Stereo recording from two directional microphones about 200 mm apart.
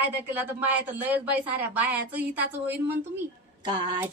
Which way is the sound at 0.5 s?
10° right (ahead or behind).